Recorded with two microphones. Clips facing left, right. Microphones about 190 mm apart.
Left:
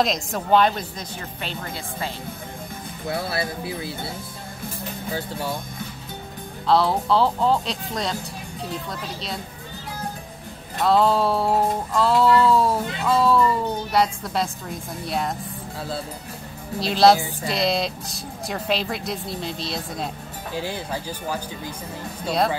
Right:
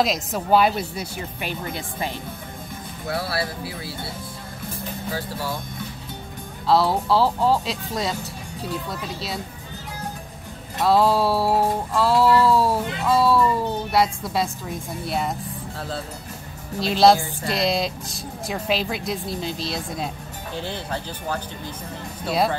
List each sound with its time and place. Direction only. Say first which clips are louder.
0.0 s speech: even; centre (ahead or behind); by 2.1 s 15° right (ahead or behind)
3.1 s speech: even; 20° left (ahead or behind)
6.7 s music: even; centre (ahead or behind)
10.8 s music: even; 5° right (ahead or behind)
16.8 s music: even; centre (ahead or behind)
20.5 s speech: left 1 dB; 10° left (ahead or behind)